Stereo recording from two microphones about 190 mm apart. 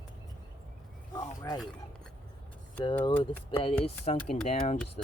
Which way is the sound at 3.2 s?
30° left (ahead or behind).